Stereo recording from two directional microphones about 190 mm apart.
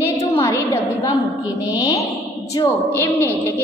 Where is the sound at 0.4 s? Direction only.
15° left (ahead or behind).